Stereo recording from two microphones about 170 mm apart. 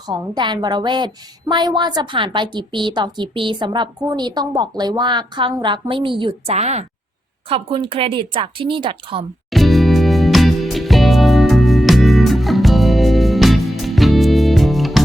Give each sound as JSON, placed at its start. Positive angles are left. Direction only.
{"t": 0.1, "sound": "a woman's voice", "side_deg": -25}
{"t": 6.5, "sound": "speech", "side_deg": -40}
{"t": 9.5, "sound": "music", "side_deg": 0}